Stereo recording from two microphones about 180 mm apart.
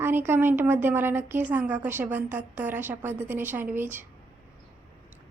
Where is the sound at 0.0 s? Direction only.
10° right (ahead or behind).